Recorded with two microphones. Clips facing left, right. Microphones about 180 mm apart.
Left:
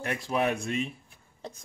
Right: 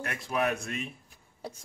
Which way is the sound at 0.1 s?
30° left (ahead or behind).